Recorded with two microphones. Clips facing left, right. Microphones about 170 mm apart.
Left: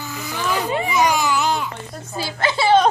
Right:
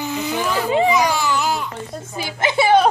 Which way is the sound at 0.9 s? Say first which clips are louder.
Right 1 dB; 20° left (ahead or behind).